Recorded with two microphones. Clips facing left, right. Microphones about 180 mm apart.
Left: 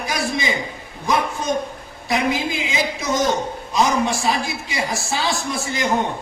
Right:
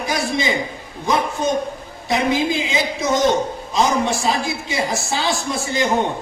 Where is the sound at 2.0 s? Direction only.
25° right (ahead or behind).